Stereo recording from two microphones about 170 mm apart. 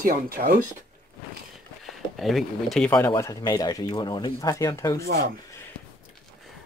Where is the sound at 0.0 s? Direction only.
60° right (ahead or behind).